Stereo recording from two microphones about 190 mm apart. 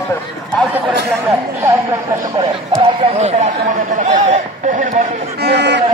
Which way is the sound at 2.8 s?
35° right (ahead or behind).